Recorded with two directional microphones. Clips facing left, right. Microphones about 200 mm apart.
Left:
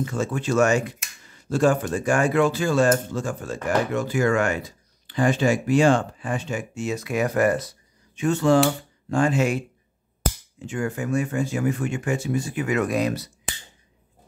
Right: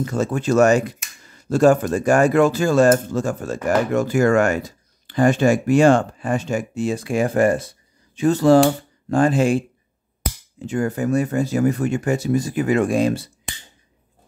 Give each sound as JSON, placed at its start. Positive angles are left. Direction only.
{"t": 0.0, "sound": "speech", "side_deg": -40}
{"t": 10.7, "sound": "speech", "side_deg": -40}